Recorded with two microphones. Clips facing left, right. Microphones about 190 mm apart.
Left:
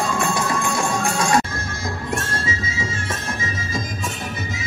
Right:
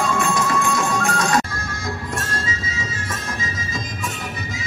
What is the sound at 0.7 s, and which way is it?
Music, 30° left (ahead or behind).